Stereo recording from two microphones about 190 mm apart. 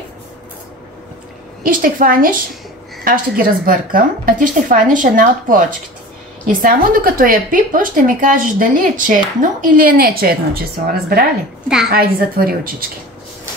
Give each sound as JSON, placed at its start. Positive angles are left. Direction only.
{"t": 1.6, "sound": "a woman's voice", "side_deg": -45}